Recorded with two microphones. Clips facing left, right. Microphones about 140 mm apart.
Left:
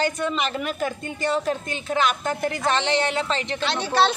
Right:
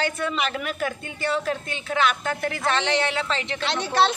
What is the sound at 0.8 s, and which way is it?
Speech, 40° left (ahead or behind).